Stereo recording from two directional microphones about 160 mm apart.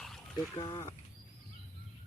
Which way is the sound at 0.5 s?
20° left (ahead or behind).